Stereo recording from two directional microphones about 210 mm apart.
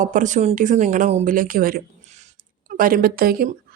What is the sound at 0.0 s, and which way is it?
Speech, 35° right (ahead or behind).